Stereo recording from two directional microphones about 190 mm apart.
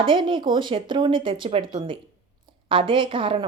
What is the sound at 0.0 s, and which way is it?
Speech, 25° right (ahead or behind).